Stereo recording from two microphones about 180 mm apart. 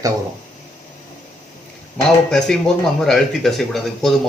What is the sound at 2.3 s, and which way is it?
Speech, 5° left (ahead or behind).